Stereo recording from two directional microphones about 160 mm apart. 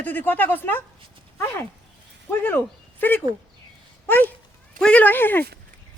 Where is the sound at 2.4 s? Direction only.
15° left (ahead or behind).